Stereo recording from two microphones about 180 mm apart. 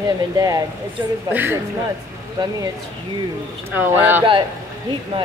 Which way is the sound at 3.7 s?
10° right (ahead or behind).